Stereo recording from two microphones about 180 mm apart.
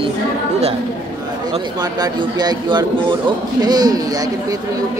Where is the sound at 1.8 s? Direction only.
20° right (ahead or behind).